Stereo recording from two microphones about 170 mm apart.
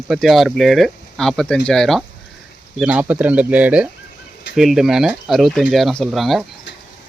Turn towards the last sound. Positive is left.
turn(degrees=0)  # may be behind; listen again after turning